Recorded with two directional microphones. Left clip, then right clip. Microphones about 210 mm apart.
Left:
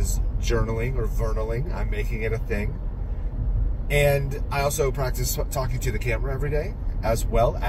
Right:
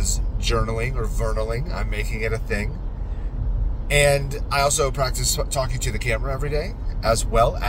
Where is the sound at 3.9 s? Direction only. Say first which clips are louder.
Right 3 dB; 10° right (ahead or behind).